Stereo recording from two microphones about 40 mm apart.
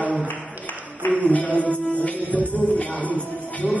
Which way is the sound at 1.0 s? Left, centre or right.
Left.